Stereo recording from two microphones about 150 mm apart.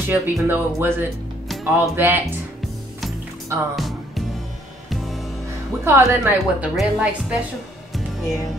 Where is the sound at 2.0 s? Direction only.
15° right (ahead or behind).